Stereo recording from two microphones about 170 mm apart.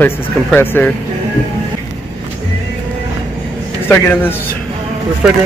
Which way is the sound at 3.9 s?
10° left (ahead or behind).